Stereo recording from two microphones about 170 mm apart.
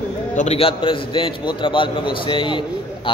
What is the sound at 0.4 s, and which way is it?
A man's voice, 35° left (ahead or behind).